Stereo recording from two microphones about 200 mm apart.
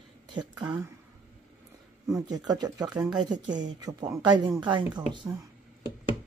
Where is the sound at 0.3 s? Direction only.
20° right (ahead or behind).